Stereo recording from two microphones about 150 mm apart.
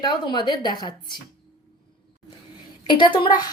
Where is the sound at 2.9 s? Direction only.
30° left (ahead or behind).